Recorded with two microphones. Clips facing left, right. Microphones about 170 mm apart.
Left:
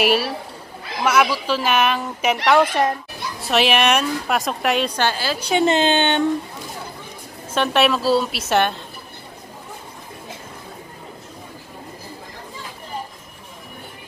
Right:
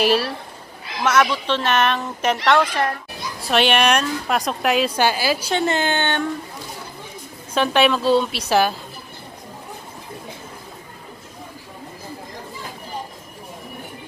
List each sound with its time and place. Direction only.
0.0 s a woman's voice: centre (ahead or behind)
2.6 s speech: 20° left (ahead or behind)
3.3 s a woman's voice: centre (ahead or behind)
5.5 s speech: 20° left (ahead or behind)
7.5 s a woman's voice: centre (ahead or behind)